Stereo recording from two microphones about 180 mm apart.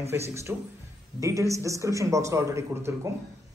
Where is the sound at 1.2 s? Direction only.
15° right (ahead or behind).